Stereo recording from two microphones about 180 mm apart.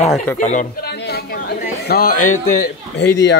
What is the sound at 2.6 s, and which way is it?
Speech, 70° left (ahead or behind).